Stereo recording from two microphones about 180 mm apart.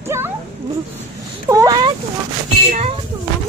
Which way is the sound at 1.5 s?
20° right (ahead or behind).